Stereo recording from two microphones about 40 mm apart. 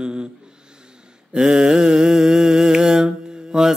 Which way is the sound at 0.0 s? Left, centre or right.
Right.